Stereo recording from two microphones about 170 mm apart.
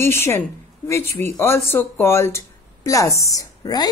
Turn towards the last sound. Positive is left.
turn(degrees=25)  # may be behind; listen again after turning